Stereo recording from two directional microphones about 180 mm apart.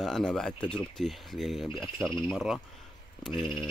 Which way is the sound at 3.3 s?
25° left (ahead or behind).